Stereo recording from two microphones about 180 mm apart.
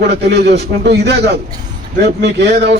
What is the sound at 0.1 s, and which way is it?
A man's voice, 65° right (ahead or behind).